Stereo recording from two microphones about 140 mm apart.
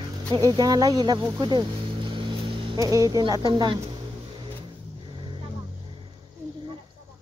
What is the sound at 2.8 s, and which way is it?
Speech, 25° right (ahead or behind).